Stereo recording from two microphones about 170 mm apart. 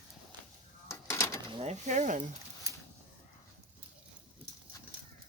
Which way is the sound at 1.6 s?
45° right (ahead or behind).